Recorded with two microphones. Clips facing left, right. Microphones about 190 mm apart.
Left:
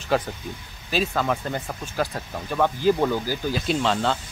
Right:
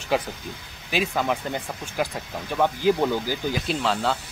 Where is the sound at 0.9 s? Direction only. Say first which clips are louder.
Left 1 dB; 15° right (ahead or behind).